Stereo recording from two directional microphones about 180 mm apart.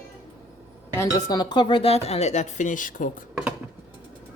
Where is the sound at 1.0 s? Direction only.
20° left (ahead or behind); by 3.2 s 50° left (ahead or behind).